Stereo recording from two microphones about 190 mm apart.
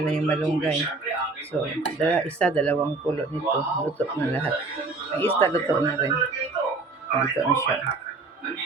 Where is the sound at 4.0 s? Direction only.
10° left (ahead or behind).